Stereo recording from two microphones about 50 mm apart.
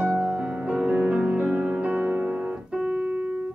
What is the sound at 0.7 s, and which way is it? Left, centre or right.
Music, right.